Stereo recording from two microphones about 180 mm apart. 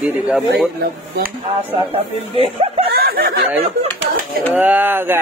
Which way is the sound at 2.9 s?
55° right (ahead or behind).